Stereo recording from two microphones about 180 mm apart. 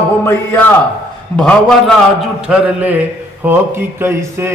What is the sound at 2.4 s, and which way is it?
Mantra, 5° right (ahead or behind).